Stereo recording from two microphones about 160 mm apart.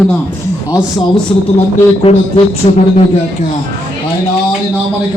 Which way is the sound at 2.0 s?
40° left (ahead or behind).